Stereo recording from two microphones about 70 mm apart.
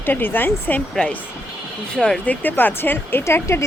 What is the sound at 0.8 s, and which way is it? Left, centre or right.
Speech, centre.